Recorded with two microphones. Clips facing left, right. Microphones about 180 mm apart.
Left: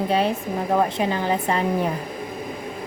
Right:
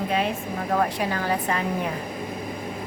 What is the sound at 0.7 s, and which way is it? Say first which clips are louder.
Speech: left 3 dB; 20° left (ahead or behind).